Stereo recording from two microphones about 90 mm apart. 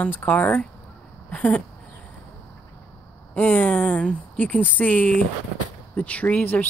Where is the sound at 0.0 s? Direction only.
20° left (ahead or behind).